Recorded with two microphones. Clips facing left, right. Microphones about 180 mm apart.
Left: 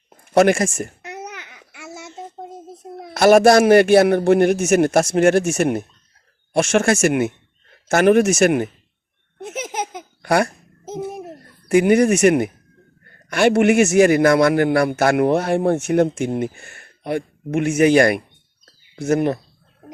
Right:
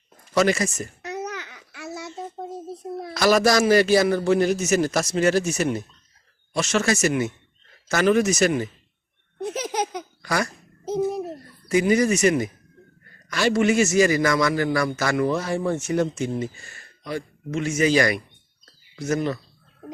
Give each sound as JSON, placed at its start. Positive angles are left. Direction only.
{"t": 0.3, "sound": "a man's voice", "side_deg": 55}
{"t": 1.0, "sound": "babbling", "side_deg": 20}
{"t": 3.2, "sound": "a man's voice", "side_deg": 60}
{"t": 9.4, "sound": "laughter", "side_deg": 20}
{"t": 10.2, "sound": "a man's voice", "side_deg": 60}
{"t": 11.7, "sound": "a man's voice", "side_deg": 60}